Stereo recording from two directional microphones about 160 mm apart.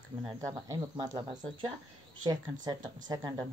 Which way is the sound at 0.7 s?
20° right (ahead or behind).